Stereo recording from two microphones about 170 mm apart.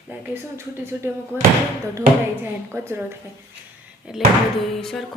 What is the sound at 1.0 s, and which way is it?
Speech, 15° right (ahead or behind).